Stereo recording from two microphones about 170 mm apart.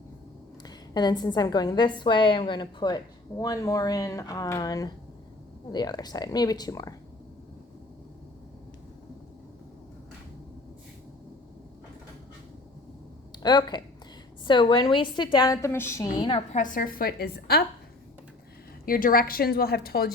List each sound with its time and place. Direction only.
0.9 s a woman's voice: 25° left (ahead or behind)
13.3 s a woman's voice: 25° left (ahead or behind)
16.1 s a woman's voice: 30° left (ahead or behind)
16.5 s a woman's voice: 50° left (ahead or behind); by 17.6 s 70° left (ahead or behind)
18.9 s a woman's voice: 55° left (ahead or behind)